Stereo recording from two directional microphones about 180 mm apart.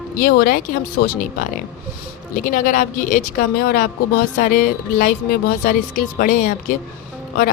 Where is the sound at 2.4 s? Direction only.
50° left (ahead or behind).